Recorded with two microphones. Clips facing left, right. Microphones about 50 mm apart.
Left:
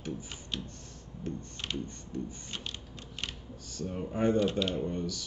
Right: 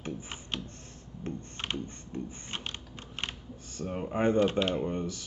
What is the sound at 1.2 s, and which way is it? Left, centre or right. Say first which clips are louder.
Computer keyboard: right 1 dB; right.